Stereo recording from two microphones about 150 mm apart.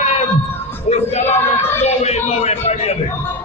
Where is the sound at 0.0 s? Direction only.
45° left (ahead or behind).